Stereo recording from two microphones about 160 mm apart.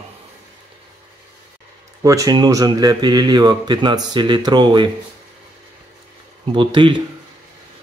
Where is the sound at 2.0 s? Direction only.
20° right (ahead or behind).